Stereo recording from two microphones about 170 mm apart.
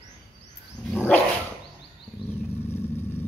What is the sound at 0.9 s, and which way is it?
Dog, 10° left (ahead or behind).